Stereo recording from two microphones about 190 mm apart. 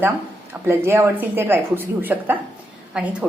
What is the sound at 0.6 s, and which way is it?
A woman's voice, 10° right (ahead or behind).